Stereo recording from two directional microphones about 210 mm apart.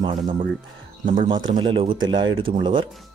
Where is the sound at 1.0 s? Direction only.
35° right (ahead or behind).